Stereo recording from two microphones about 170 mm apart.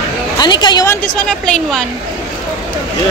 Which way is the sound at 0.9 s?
5° left (ahead or behind).